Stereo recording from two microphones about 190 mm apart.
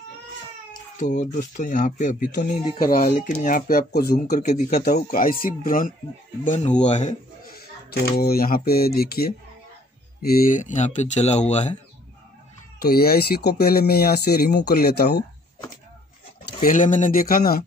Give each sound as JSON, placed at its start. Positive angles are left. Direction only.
{"t": 0.9, "sound": "speech", "side_deg": 40}
{"t": 8.2, "sound": "speech", "side_deg": 50}
{"t": 12.8, "sound": "speech", "side_deg": 50}
{"t": 16.6, "sound": "speech", "side_deg": 45}